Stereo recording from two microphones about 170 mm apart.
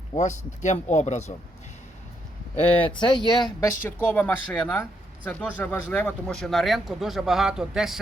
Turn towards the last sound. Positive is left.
turn(degrees=-5)  # may be behind; listen again after turning